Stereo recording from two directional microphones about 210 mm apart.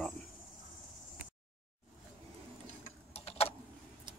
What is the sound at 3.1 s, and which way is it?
Tick-tock, 30° left (ahead or behind).